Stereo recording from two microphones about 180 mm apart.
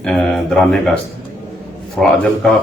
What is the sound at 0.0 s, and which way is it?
Speech, 5° left (ahead or behind).